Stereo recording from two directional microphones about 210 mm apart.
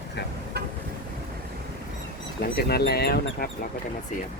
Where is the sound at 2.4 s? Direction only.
50° left (ahead or behind).